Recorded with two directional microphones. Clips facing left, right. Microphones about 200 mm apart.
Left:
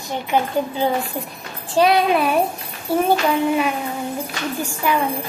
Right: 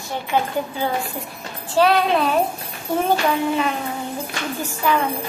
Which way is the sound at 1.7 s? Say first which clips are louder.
Left 1 dB; 15° left (ahead or behind).